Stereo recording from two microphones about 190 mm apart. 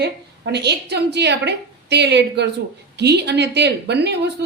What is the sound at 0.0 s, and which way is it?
Speech, 60° right (ahead or behind).